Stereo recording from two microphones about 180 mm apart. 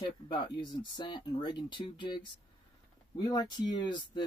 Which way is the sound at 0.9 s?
25° left (ahead or behind).